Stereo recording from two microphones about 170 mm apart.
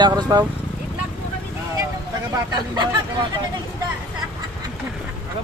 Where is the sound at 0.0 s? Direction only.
25° right (ahead or behind).